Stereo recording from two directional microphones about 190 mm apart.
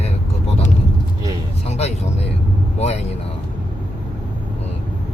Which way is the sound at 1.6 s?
35° left (ahead or behind).